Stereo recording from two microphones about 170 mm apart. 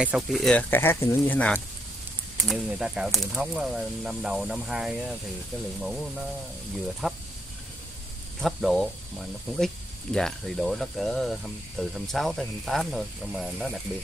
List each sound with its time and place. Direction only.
0.0 s speech: 5° right (ahead or behind)
2.4 s speech: centre (ahead or behind)
8.4 s speech: centre (ahead or behind)
10.1 s speech: centre (ahead or behind)